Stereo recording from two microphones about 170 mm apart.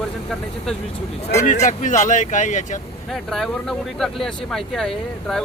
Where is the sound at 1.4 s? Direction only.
45° left (ahead or behind).